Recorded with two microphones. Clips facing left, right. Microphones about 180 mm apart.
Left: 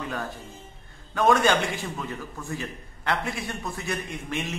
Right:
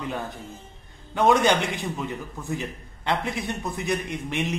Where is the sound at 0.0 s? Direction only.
20° right (ahead or behind).